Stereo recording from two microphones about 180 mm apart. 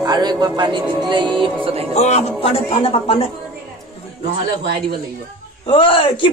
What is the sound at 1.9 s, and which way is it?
A man's voice, 35° left (ahead or behind).